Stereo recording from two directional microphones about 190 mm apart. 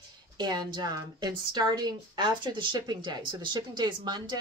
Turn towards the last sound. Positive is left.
turn(degrees=-20)  # may be behind; listen again after turning